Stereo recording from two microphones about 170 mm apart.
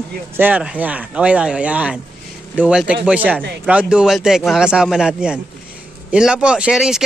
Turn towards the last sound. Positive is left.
turn(degrees=-5)  # may be behind; listen again after turning